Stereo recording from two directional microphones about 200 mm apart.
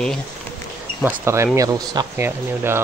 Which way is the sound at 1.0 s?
10° right (ahead or behind).